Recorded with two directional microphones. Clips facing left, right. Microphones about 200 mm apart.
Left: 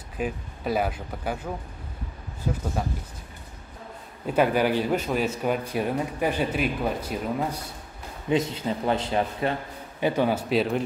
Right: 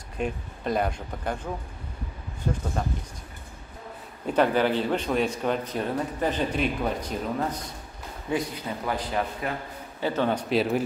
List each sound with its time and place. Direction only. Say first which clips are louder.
0.2 s speech: even; 5° left (ahead or behind)
4.3 s speech: even; 10° left (ahead or behind)
8.3 s a man's voice: left 4 dB; 25° left (ahead or behind)
10.0 s speech: left 2 dB; 10° left (ahead or behind)